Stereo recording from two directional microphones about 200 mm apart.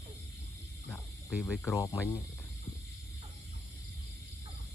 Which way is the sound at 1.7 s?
15° left (ahead or behind).